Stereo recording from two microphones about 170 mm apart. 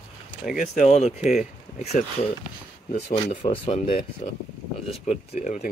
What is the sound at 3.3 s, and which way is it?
Speech, 35° left (ahead or behind).